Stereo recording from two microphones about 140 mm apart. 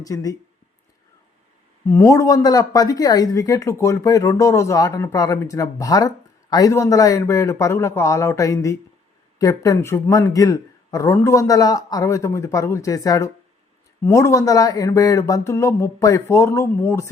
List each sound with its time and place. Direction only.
0.0 s speech: 25° left (ahead or behind)
1.9 s speech: 20° left (ahead or behind)